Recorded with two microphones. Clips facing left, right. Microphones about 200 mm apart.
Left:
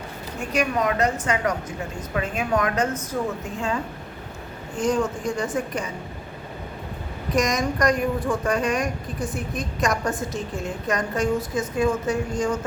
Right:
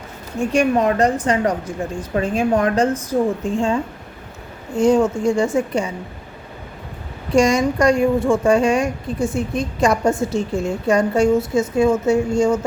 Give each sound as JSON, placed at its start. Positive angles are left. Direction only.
{"t": 0.3, "sound": "a woman's voice", "side_deg": -30}
{"t": 4.8, "sound": "a woman's voice", "side_deg": -25}
{"t": 7.3, "sound": "a woman's voice", "side_deg": -30}